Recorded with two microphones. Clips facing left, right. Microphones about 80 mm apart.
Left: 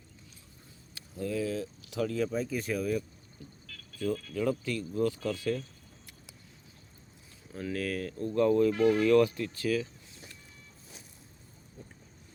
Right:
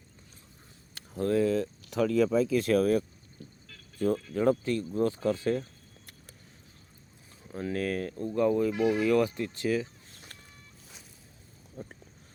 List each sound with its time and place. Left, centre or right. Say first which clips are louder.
0.9 s speech: right 7 dB; right
3.4 s speech: even; right
7.4 s speech: right 3 dB; right
8.3 s speech: left 1 dB; centre
9.3 s speech: right 1 dB; right
10.3 s vehicle: right 2 dB; right
11.8 s boat: right 8 dB; right